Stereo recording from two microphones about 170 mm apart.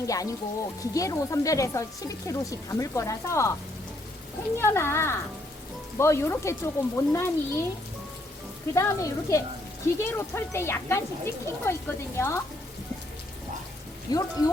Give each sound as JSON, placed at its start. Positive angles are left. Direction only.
{"t": 0.0, "sound": "speech", "side_deg": 20}
{"t": 4.5, "sound": "speech", "side_deg": 15}
{"t": 8.7, "sound": "speech", "side_deg": 20}
{"t": 14.1, "sound": "speech", "side_deg": 20}